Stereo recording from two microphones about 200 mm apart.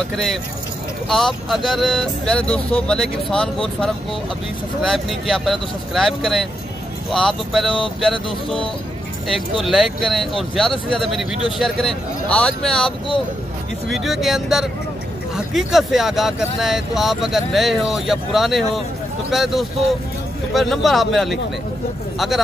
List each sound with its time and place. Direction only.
0.1 s speech: centre (ahead or behind)
4.8 s speech: centre (ahead or behind)
9.6 s speech: centre (ahead or behind)